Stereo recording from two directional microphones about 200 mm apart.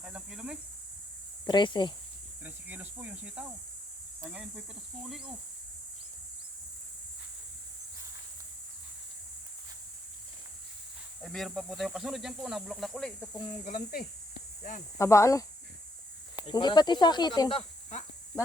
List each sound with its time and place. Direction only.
0.0 s cricket: 5° right (ahead or behind)
1.5 s speech: 25° left (ahead or behind)
2.4 s cricket: 10° right (ahead or behind)
4.2 s speech: 5° right (ahead or behind)
11.2 s speech: centre (ahead or behind)
13.7 s speech: 45° left (ahead or behind)
14.9 s speech: 15° left (ahead or behind)
16.5 s speech: 20° left (ahead or behind)